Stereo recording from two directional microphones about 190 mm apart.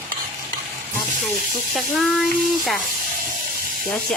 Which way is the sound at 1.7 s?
Centre (ahead or behind).